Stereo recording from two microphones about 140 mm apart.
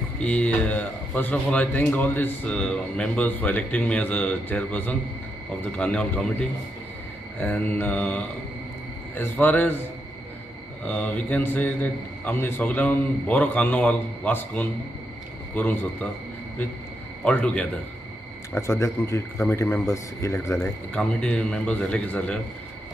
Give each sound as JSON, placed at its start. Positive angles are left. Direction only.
{"t": 0.2, "sound": "speech", "side_deg": 10}
{"t": 10.9, "sound": "speech", "side_deg": 10}
{"t": 17.2, "sound": "speech", "side_deg": 10}
{"t": 18.5, "sound": "speech", "side_deg": 20}
{"t": 20.9, "sound": "speech", "side_deg": 5}